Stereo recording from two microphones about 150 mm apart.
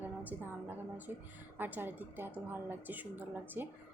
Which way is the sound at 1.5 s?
15° right (ahead or behind).